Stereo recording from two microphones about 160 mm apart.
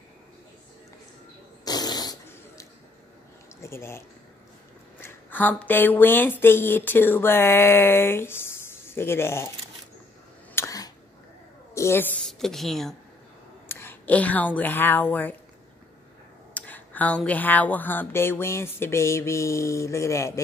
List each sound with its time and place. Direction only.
1.6 s fart: 25° left (ahead or behind)
3.6 s speech: 15° left (ahead or behind)
5.0 s speech: 10° left (ahead or behind)
10.5 s a sound: 20° left (ahead or behind)
11.7 s a woman's voice: 15° left (ahead or behind)
12.3 s a woman's voice: centre (ahead or behind)
13.7 s a woman's voice: 15° left (ahead or behind)
16.5 s speech: 10° left (ahead or behind)